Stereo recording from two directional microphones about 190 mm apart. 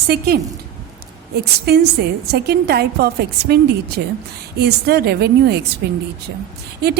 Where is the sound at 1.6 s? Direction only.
60° right (ahead or behind).